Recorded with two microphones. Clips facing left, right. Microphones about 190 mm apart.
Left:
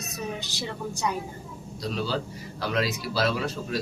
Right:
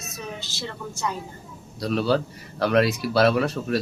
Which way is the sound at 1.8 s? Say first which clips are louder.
Right 7 dB; 65° right (ahead or behind).